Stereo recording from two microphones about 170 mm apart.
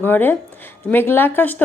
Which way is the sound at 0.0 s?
10° left (ahead or behind).